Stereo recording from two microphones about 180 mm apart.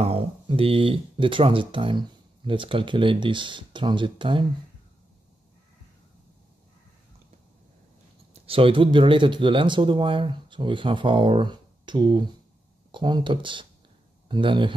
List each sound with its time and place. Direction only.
0.0 s speech: 30° right (ahead or behind)
8.3 s speech: 30° right (ahead or behind)